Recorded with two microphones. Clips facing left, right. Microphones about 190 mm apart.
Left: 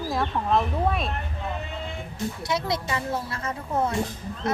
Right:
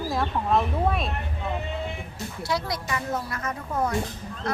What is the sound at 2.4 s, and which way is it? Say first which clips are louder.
A woman's voice: even; 25° left (ahead or behind).